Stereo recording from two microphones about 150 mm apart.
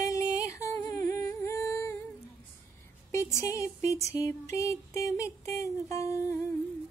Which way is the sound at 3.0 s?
20° left (ahead or behind).